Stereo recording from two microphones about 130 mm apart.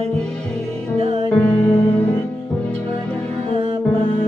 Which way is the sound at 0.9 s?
50° right (ahead or behind).